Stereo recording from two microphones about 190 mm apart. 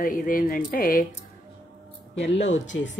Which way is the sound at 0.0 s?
45° left (ahead or behind).